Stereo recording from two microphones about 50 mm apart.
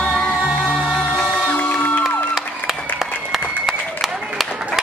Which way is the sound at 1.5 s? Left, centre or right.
Left.